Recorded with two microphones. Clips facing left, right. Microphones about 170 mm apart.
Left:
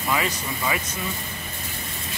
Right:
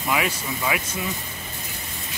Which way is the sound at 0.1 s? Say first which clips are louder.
Right 1 dB; 5° right (ahead or behind).